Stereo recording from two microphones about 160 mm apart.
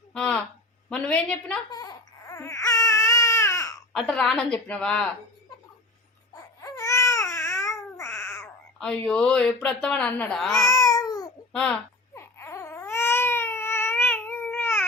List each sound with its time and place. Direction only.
0.1 s a woman's voice: 5° left (ahead or behind)
1.7 s baby cry: 25° left (ahead or behind)
3.9 s speech: 5° left (ahead or behind)
6.6 s baby cry: 20° left (ahead or behind)
8.8 s speech: 5° left (ahead or behind)
10.6 s cat: 20° left (ahead or behind)
12.1 s baby cry: 15° left (ahead or behind)